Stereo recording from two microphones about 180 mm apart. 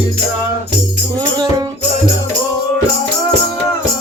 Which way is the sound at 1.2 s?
25° right (ahead or behind).